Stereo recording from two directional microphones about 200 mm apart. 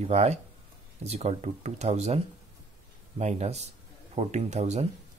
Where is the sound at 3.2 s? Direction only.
35° right (ahead or behind).